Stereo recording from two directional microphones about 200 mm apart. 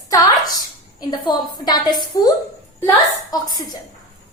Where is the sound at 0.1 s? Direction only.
20° left (ahead or behind).